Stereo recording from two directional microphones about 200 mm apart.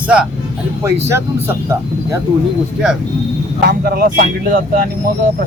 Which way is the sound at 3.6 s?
50° right (ahead or behind).